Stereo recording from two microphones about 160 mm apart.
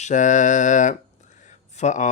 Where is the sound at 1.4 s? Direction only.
50° left (ahead or behind).